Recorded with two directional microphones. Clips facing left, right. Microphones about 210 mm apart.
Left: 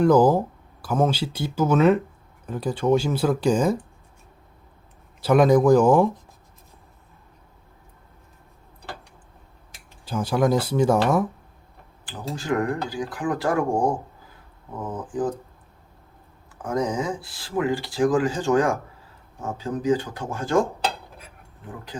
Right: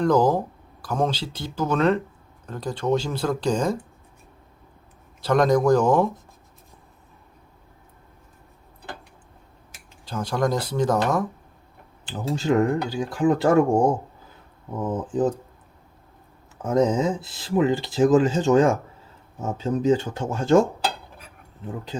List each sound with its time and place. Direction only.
0.0 s speech: 10° left (ahead or behind)
5.2 s speech: 5° left (ahead or behind)
10.1 s speech: 5° left (ahead or behind)
12.4 s speech: 25° right (ahead or behind)
15.0 s speech: 25° right (ahead or behind)
16.6 s speech: 25° right (ahead or behind)